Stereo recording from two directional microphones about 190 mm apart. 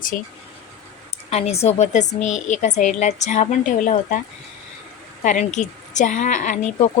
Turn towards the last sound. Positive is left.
turn(degrees=40)  # may be behind; listen again after turning